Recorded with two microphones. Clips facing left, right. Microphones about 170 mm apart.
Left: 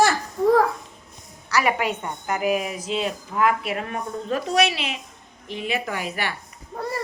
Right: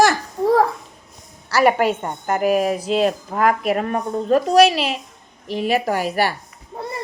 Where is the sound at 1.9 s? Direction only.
50° right (ahead or behind).